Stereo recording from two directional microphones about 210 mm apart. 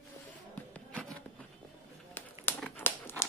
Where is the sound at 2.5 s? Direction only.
5° left (ahead or behind).